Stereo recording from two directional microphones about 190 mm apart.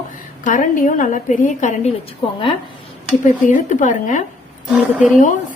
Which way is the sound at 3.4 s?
40° left (ahead or behind).